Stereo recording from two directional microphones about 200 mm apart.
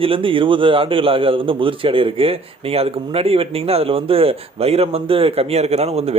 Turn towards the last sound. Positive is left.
turn(degrees=-30)  # may be behind; listen again after turning